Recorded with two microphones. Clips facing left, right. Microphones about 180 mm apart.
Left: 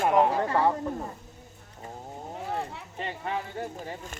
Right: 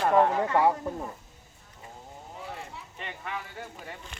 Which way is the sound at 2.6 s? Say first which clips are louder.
Left 7 dB; 60° left (ahead or behind).